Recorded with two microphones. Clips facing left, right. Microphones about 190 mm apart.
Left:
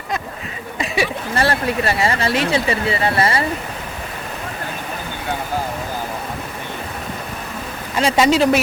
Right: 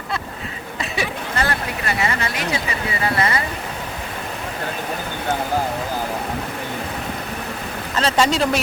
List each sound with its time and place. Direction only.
1.4 s speech: 30° left (ahead or behind)
7.9 s speech: 10° left (ahead or behind)